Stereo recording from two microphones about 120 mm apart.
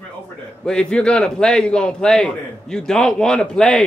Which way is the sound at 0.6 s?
10° left (ahead or behind).